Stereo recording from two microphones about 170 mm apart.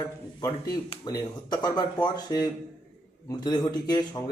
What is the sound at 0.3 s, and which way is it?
Speech, 25° left (ahead or behind).